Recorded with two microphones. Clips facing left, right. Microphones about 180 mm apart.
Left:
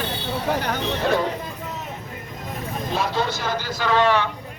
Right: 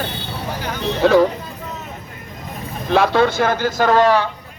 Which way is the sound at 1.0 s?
85° right.